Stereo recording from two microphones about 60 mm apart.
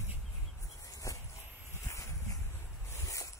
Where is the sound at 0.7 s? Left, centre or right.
Left.